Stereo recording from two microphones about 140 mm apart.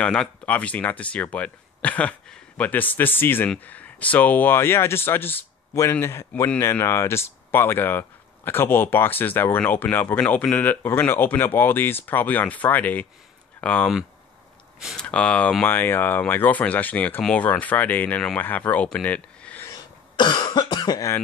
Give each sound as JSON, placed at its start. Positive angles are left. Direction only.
{"t": 0.0, "sound": "speech", "side_deg": 5}
{"t": 14.8, "sound": "speech", "side_deg": -5}
{"t": 15.0, "sound": "speech", "side_deg": 10}
{"t": 19.7, "sound": "cough", "side_deg": 35}